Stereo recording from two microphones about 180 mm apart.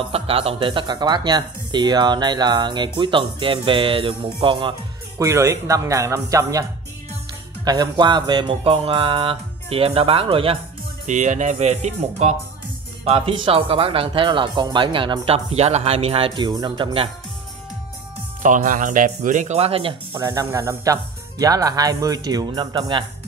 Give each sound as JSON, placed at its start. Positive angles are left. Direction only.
{"t": 0.1, "sound": "speech", "side_deg": -35}
{"t": 5.2, "sound": "speech", "side_deg": -15}
{"t": 7.6, "sound": "speech", "side_deg": -25}
{"t": 11.1, "sound": "speech", "side_deg": -45}
{"t": 18.4, "sound": "speech", "side_deg": -45}
{"t": 20.1, "sound": "speech", "side_deg": -15}